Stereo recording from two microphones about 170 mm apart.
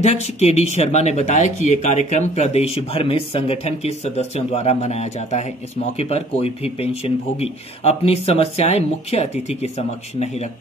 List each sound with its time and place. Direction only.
0.0 s speech: 40° left (ahead or behind)